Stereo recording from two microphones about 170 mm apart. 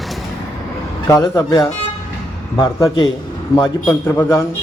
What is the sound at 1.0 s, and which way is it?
A man's voice, 20° left (ahead or behind).